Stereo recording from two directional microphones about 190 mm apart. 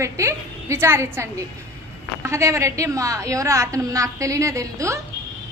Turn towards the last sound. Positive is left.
turn(degrees=-15)  # may be behind; listen again after turning